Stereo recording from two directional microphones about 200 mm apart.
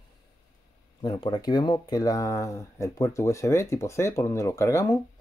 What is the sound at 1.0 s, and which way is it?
Speech, 20° left (ahead or behind).